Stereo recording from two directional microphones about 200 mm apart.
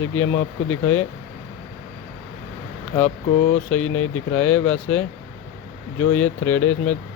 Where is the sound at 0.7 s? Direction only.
90° left.